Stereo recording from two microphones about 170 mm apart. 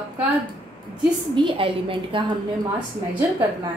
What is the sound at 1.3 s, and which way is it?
Speech, 30° right (ahead or behind).